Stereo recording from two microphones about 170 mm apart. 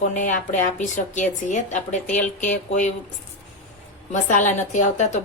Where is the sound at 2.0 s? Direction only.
10° left (ahead or behind).